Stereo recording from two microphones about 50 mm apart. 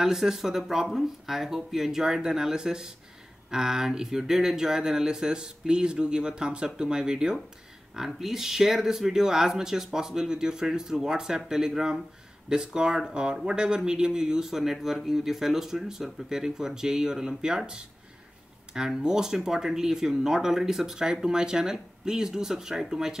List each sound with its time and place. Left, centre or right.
0.0 s speech: centre